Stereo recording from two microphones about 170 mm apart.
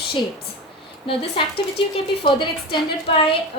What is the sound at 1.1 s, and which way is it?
Speech, 30° left (ahead or behind).